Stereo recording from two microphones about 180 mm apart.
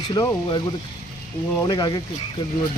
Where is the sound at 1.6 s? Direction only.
25° left (ahead or behind).